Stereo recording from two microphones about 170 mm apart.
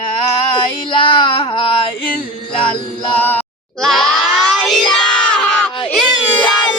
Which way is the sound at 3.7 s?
Centre (ahead or behind).